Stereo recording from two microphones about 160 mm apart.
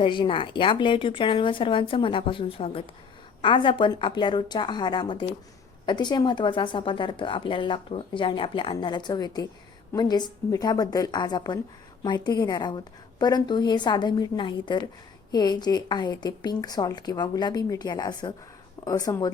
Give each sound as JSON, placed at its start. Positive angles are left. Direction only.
{"t": 0.0, "sound": "a woman's voice", "side_deg": 30}